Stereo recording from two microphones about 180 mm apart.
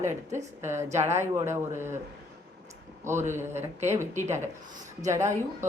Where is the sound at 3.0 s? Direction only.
15° right (ahead or behind).